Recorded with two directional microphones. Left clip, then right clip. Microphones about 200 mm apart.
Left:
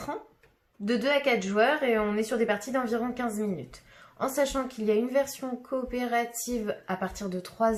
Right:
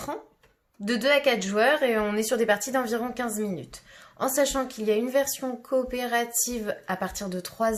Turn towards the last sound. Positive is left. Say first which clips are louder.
# even
turn(degrees=-45)  # may be behind; listen again after turning